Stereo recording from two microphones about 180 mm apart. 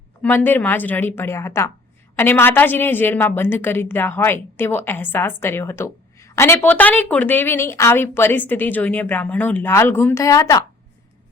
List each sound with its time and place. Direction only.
0.2 s a woman's voice: 10° left (ahead or behind)